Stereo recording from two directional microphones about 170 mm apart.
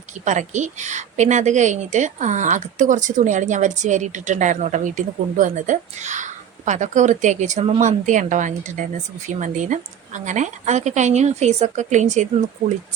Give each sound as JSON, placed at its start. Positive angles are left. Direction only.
{"t": 0.3, "sound": "a woman's voice", "side_deg": -45}